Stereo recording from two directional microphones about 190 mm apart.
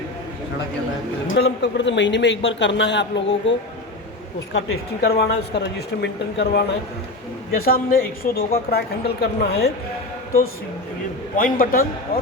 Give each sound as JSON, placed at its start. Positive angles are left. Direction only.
{"t": 1.3, "sound": "speech", "side_deg": 65}
{"t": 5.0, "sound": "a woman's voice", "side_deg": 55}
{"t": 11.3, "sound": "a man's voice", "side_deg": 45}